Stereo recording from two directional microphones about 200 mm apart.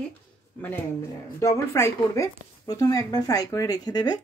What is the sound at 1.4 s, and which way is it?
Speech, 15° left (ahead or behind).